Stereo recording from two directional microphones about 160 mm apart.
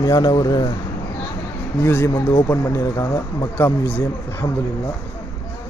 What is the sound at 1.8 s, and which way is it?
Speech, 15° left (ahead or behind).